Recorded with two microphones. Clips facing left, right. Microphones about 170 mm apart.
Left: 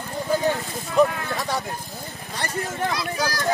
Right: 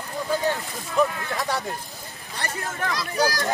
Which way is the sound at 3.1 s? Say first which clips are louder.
Right 3 dB; 35° right (ahead or behind).